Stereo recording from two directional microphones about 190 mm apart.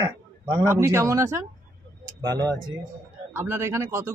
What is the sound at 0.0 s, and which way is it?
Speech, 15° right (ahead or behind).